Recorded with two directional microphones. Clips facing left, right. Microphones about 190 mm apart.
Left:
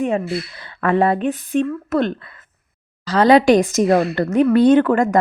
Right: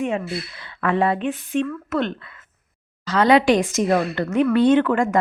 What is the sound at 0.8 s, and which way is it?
A woman's voice, 40° left (ahead or behind).